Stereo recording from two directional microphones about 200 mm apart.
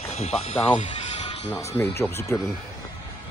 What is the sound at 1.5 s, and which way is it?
Speech, 15° left (ahead or behind).